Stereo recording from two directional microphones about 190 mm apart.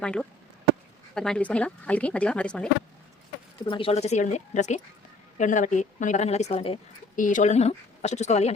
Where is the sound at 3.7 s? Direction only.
30° left (ahead or behind).